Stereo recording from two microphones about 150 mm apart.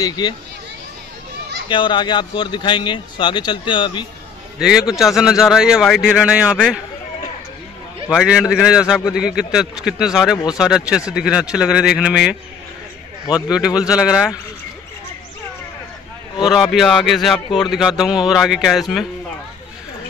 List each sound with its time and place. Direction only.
0.2 s speech: 25° left (ahead or behind)
1.7 s speech: 30° left (ahead or behind)
4.6 s a man's voice: 5° right (ahead or behind)
8.1 s a man's voice: centre (ahead or behind)
13.8 s a man's voice: 5° right (ahead or behind)
16.4 s a man's voice: centre (ahead or behind)